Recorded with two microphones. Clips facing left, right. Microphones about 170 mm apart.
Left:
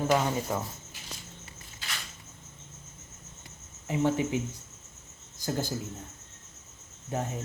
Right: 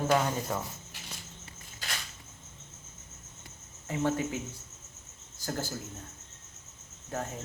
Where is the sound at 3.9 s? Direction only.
15° left (ahead or behind).